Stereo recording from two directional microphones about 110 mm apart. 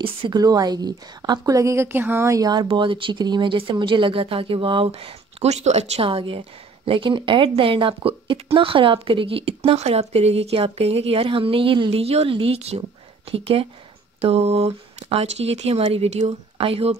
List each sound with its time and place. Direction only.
0.0 s speech: 55° right (ahead or behind)
0.4 s a woman's voice: 35° right (ahead or behind)
2.7 s speech: 50° right (ahead or behind); by 12.8 s 70° right (ahead or behind)
13.3 s speech: 55° right (ahead or behind)
14.2 s speech: 75° right (ahead or behind)
16.6 s speech: 65° right (ahead or behind)